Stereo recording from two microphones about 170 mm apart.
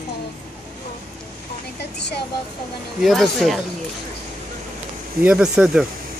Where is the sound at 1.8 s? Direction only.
80° left.